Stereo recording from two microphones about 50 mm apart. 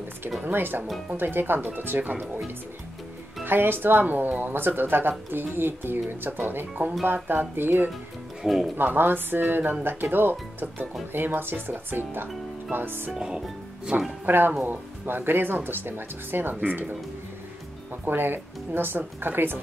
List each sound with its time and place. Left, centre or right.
0.5 s speech: right
3.4 s speech: right
8.4 s speech: centre
8.7 s speech: right
14.2 s speech: right
18.0 s speech: right